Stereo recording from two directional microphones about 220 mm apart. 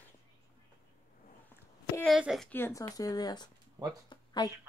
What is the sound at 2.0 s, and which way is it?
Speech, centre (ahead or behind).